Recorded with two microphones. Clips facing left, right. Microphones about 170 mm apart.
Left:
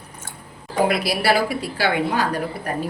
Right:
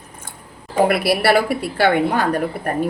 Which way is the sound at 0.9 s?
60° right (ahead or behind).